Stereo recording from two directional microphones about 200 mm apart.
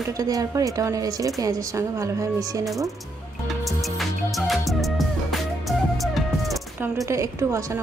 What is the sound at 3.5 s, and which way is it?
Music, centre (ahead or behind).